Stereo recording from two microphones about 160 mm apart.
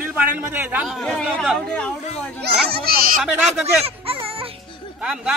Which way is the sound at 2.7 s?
75° right (ahead or behind).